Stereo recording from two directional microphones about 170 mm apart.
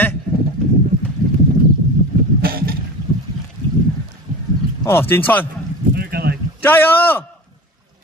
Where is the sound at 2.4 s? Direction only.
60° right (ahead or behind).